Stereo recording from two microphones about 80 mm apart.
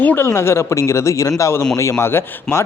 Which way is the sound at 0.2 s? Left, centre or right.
Left.